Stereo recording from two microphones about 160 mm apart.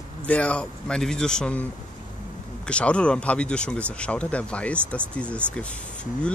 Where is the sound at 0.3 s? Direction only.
10° left (ahead or behind).